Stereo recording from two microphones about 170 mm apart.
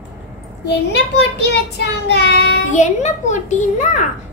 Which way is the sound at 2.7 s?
45° left (ahead or behind).